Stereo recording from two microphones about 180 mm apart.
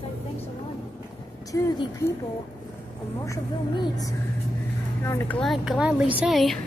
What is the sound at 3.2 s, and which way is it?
Speech, 15° left (ahead or behind).